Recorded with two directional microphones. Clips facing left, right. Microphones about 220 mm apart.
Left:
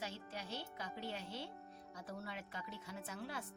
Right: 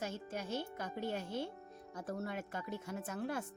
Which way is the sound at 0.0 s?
50° right (ahead or behind).